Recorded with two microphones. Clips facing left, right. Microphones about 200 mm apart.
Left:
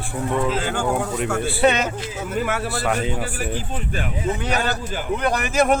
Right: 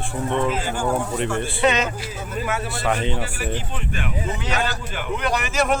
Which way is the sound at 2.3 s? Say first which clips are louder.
Left 2 dB; 65° left (ahead or behind).